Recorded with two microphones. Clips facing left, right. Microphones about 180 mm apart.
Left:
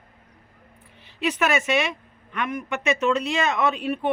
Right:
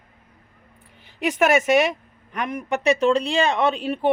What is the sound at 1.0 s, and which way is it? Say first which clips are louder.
Speech: right 4 dB; 45° right (ahead or behind).